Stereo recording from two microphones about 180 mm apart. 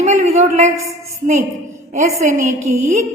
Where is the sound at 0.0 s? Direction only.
40° right (ahead or behind).